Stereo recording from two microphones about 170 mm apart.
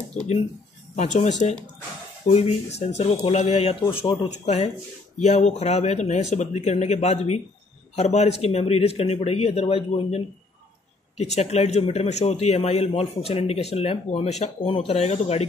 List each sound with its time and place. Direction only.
0.9 s a man's voice: 45° left (ahead or behind)